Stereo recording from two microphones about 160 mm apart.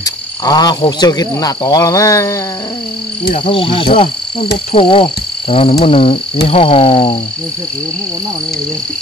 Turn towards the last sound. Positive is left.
turn(degrees=35)  # may be behind; listen again after turning